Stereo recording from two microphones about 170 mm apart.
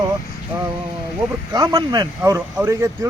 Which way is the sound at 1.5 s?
20° right (ahead or behind).